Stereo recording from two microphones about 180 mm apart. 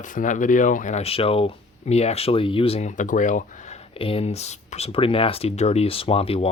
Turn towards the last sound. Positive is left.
turn(degrees=35)  # may be behind; listen again after turning